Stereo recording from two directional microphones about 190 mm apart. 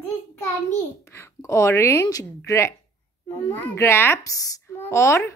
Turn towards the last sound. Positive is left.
turn(degrees=15)  # may be behind; listen again after turning